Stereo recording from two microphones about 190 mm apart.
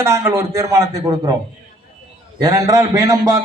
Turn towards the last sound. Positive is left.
turn(degrees=-15)  # may be behind; listen again after turning